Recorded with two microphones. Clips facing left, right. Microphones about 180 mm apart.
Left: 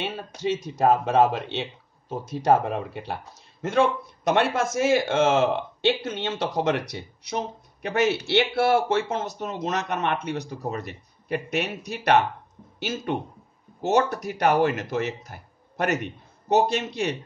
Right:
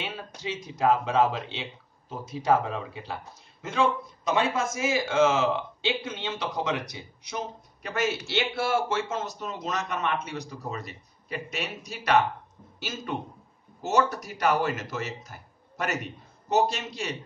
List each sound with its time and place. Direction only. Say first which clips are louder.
0.4 s speech: left 5 dB; 60° left (ahead or behind)